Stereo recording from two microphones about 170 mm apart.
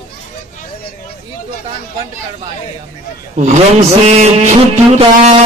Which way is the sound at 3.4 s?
45° right (ahead or behind).